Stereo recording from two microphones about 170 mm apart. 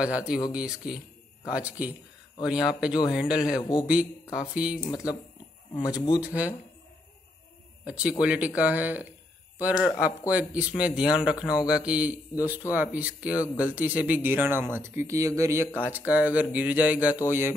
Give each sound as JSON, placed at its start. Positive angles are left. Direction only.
{"t": 0.0, "sound": "speech", "side_deg": -5}
{"t": 6.2, "sound": "speech", "side_deg": -10}
{"t": 7.8, "sound": "speech", "side_deg": -5}